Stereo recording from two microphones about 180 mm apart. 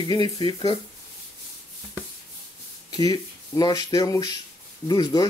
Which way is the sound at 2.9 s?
20° left (ahead or behind).